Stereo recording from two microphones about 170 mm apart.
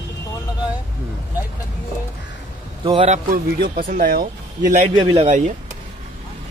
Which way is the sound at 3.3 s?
55° right (ahead or behind).